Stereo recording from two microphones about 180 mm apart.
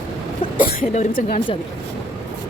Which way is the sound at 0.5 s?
45° left (ahead or behind).